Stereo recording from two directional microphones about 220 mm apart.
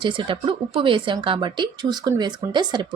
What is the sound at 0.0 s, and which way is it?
A woman's voice, 20° right (ahead or behind).